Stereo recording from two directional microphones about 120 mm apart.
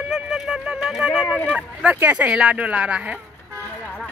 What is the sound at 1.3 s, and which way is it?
Speech, 10° left (ahead or behind).